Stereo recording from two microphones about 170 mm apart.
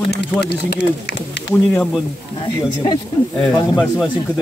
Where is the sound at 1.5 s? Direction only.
10° left (ahead or behind).